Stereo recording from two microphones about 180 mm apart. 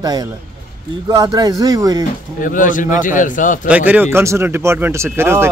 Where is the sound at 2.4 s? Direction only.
45° left (ahead or behind).